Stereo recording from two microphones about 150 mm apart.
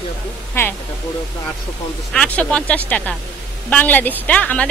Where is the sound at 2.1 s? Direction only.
10° left (ahead or behind).